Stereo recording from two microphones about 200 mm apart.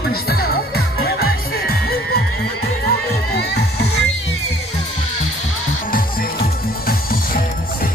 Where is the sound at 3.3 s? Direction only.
55° left (ahead or behind).